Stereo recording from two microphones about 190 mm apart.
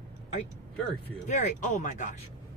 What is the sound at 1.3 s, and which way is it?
Speech, 40° left (ahead or behind).